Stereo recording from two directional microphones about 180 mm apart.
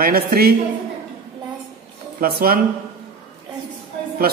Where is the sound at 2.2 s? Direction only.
55° right (ahead or behind).